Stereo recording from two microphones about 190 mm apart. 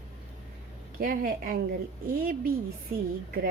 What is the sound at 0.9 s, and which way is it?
Speech, 50° right (ahead or behind).